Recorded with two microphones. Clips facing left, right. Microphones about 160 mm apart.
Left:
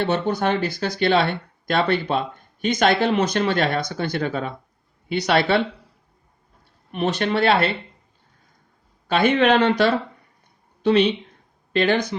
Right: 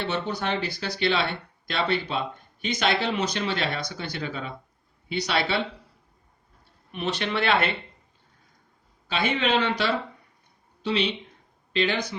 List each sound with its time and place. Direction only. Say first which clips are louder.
0.0 s speech: left 7 dB; 50° left (ahead or behind)
6.9 s speech: left 6 dB; 50° left (ahead or behind)
9.0 s speech: left 8 dB; 55° left (ahead or behind)